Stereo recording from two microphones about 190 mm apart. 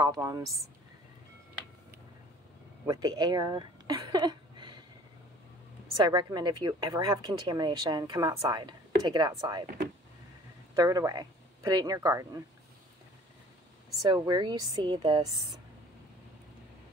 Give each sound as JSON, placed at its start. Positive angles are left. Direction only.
{"t": 0.0, "sound": "a woman's voice", "side_deg": -20}
{"t": 2.9, "sound": "speech", "side_deg": -20}
{"t": 5.9, "sound": "a woman's voice", "side_deg": -20}
{"t": 10.8, "sound": "speech", "side_deg": -20}
{"t": 14.1, "sound": "a woman's voice", "side_deg": -20}